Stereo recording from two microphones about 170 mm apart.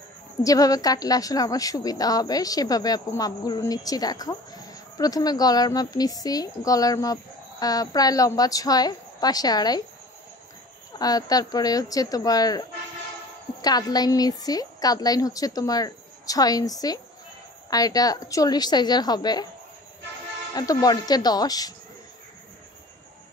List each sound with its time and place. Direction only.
0.4 s a woman's voice: 20° left (ahead or behind)
11.0 s a woman's voice: 20° left (ahead or behind)
20.5 s a woman's voice: 20° left (ahead or behind)